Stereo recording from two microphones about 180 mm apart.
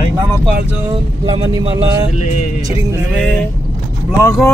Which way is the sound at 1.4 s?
20° right (ahead or behind).